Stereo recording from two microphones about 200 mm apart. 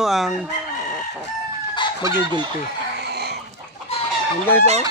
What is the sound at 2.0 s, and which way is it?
Speech, 15° right (ahead or behind).